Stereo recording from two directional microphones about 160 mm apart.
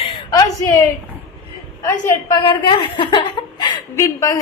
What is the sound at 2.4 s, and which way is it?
A woman's voice, 35° left (ahead or behind).